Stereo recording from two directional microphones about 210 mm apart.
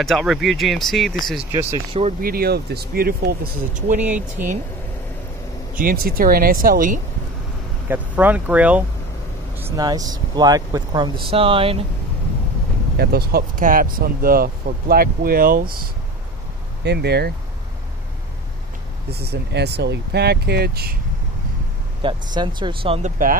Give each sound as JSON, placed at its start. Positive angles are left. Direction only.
{"t": 0.0, "sound": "speech", "side_deg": 0}
{"t": 1.5, "sound": "speech", "side_deg": -15}
{"t": 2.2, "sound": "speech", "side_deg": -45}
{"t": 5.8, "sound": "speech", "side_deg": -40}
{"t": 7.9, "sound": "speech", "side_deg": -10}
{"t": 12.9, "sound": "speech", "side_deg": -50}
{"t": 16.8, "sound": "speech", "side_deg": -50}
{"t": 19.0, "sound": "speech", "side_deg": -50}
{"t": 22.0, "sound": "speech", "side_deg": -20}